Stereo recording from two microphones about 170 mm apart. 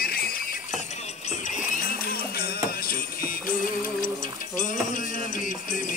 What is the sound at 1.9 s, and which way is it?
Music, 60° left (ahead or behind).